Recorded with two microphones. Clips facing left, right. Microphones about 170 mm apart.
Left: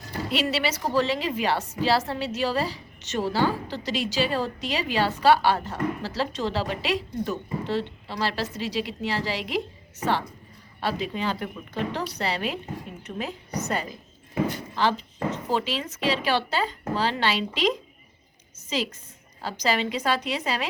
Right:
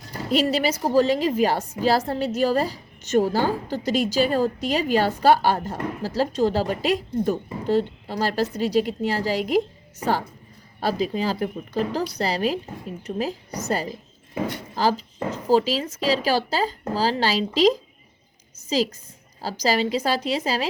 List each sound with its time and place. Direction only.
0.3 s a woman's voice: 40° right (ahead or behind)
14.8 s speech: 35° right (ahead or behind)
19.4 s speech: 35° right (ahead or behind)